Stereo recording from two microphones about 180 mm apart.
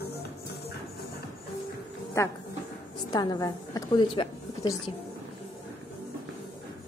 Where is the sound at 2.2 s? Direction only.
15° left (ahead or behind).